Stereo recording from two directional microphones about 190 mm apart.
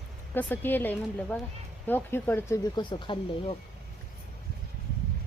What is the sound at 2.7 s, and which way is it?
Speech, 25° left (ahead or behind).